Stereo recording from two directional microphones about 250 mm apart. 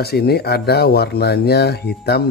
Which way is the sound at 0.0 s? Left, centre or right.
Left.